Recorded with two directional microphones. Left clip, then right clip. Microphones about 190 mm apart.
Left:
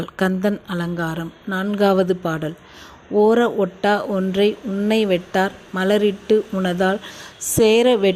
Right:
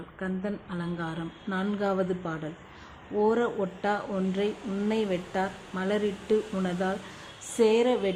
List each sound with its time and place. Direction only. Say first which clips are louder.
0.2 s speech: left 13 dB; 45° left (ahead or behind)